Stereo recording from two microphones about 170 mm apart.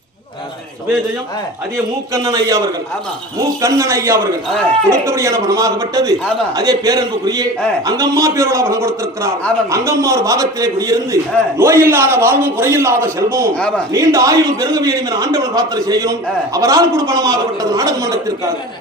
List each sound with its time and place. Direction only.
2.1 s a man's voice: 20° right (ahead or behind)
13.6 s a man's voice: 5° left (ahead or behind)
13.9 s a man's voice: 15° right (ahead or behind)